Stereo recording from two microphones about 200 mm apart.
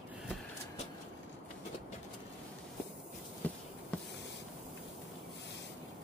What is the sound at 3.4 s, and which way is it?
Insect, 10° left (ahead or behind).